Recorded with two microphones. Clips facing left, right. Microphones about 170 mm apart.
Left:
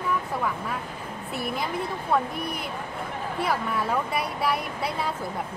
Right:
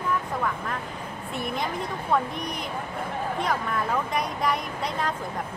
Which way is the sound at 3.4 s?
5° left (ahead or behind).